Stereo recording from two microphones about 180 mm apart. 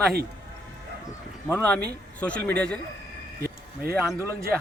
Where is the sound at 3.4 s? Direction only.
55° right (ahead or behind).